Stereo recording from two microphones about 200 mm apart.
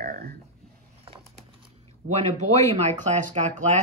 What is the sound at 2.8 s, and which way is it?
Speech, 35° right (ahead or behind).